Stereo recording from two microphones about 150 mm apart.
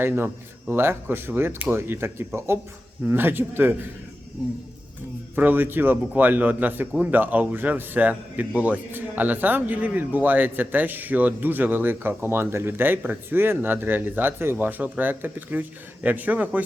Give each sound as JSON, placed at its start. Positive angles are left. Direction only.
{"t": 0.7, "sound": "a man's voice", "side_deg": -15}
{"t": 5.3, "sound": "a man's voice", "side_deg": -10}